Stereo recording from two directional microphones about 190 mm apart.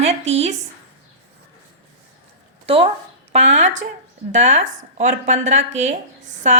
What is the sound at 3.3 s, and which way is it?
A woman's voice, 35° right (ahead or behind).